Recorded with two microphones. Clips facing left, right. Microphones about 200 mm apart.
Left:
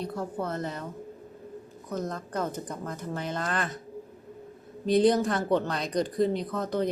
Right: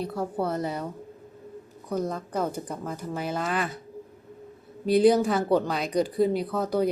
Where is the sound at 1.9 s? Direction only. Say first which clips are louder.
Right 4 dB; 10° right (ahead or behind).